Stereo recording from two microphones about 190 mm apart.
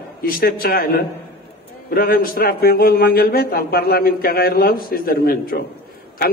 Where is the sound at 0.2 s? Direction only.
50° left (ahead or behind).